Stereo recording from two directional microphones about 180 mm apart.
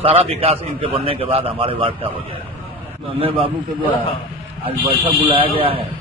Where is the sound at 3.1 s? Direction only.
30° right (ahead or behind).